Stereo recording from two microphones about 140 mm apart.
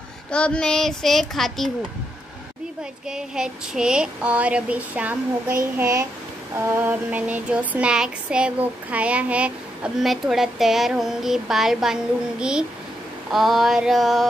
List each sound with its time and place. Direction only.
0.3 s a child's voice: 10° left (ahead or behind)
2.8 s speech: 5° right (ahead or behind)
5.8 s a child's voice: 20° right (ahead or behind); by 14.2 s centre (ahead or behind)